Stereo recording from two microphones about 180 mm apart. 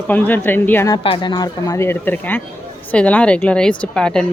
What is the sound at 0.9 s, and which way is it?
A woman's voice, 25° left (ahead or behind).